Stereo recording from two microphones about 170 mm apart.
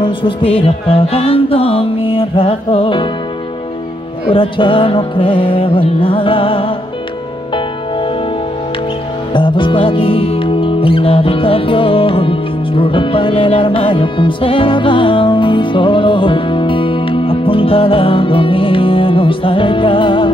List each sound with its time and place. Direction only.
0.0 s music: 30° left (ahead or behind)
4.3 s music: 30° left (ahead or behind)
9.3 s music: 30° left (ahead or behind)